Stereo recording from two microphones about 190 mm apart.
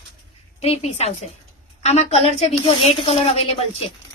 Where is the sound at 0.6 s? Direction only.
35° left (ahead or behind).